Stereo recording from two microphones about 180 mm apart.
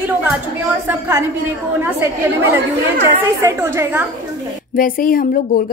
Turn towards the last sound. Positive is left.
turn(degrees=50)  # may be behind; listen again after turning